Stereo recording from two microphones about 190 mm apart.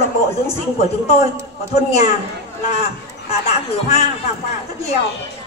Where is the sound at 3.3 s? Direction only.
35° left (ahead or behind).